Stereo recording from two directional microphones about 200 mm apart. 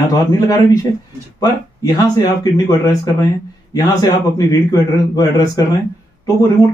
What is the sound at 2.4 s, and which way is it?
A man's voice, 20° left (ahead or behind).